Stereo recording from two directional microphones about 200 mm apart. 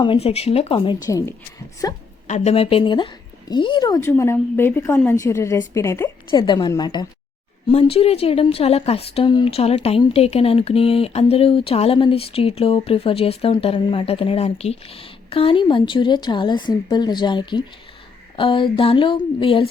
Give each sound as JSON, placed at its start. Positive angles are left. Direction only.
{"t": 0.0, "sound": "speech", "side_deg": 25}
{"t": 1.0, "sound": "a woman's voice", "side_deg": 15}
{"t": 2.2, "sound": "a woman's voice", "side_deg": 35}